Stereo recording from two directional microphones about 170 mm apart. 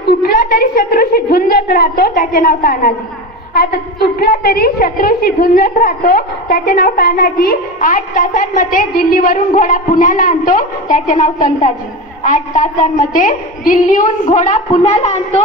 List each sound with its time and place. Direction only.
0.2 s a woman's voice: 60° left (ahead or behind); by 15.4 s 40° left (ahead or behind)